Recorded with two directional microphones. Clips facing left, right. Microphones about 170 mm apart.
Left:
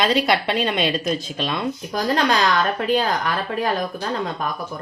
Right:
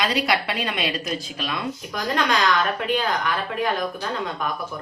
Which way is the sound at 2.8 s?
40° left (ahead or behind).